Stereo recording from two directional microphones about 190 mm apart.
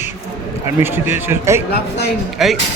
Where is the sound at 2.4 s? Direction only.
Centre (ahead or behind).